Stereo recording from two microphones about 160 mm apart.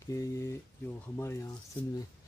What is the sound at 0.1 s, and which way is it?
Speech, 20° left (ahead or behind).